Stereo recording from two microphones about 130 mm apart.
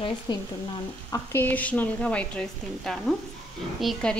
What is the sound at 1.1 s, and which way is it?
A woman's voice, 15° left (ahead or behind).